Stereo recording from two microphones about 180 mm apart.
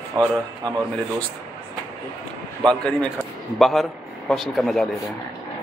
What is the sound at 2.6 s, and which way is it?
Speech, 5° left (ahead or behind).